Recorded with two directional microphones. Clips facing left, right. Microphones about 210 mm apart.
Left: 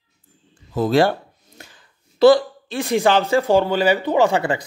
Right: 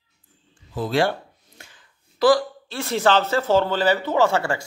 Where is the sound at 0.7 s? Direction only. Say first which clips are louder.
Left 5 dB; 40° left (ahead or behind).